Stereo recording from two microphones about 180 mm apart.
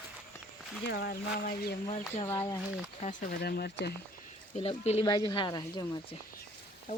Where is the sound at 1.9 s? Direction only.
35° left (ahead or behind).